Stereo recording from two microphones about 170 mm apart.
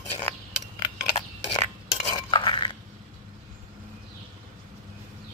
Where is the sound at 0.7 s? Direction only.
25° left (ahead or behind).